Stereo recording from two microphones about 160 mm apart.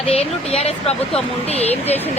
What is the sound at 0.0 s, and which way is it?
Speech, 35° left (ahead or behind).